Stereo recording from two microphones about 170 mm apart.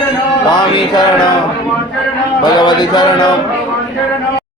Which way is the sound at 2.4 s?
25° left (ahead or behind).